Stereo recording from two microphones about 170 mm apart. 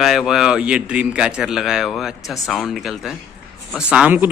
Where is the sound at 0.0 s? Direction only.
Centre (ahead or behind).